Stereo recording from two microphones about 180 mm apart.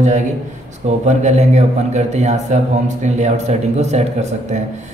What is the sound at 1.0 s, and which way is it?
A man's voice, 40° right (ahead or behind).